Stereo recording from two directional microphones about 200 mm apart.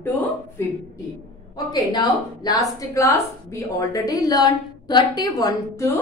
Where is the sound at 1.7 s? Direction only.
20° left (ahead or behind).